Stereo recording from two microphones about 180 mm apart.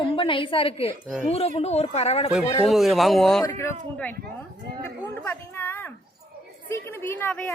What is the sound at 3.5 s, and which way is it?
Speech, 15° left (ahead or behind).